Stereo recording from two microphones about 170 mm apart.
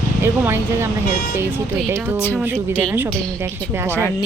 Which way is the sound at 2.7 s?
10° right (ahead or behind).